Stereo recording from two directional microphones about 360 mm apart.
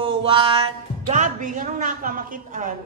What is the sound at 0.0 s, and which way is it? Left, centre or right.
Speech, centre.